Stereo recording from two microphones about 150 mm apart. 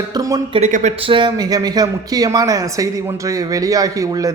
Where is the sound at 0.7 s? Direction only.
55° right (ahead or behind).